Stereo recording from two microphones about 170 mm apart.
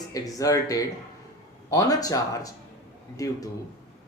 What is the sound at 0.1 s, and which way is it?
Speech, 20° left (ahead or behind).